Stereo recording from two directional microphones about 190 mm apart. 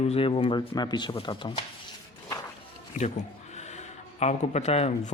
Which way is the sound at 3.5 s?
35° left (ahead or behind).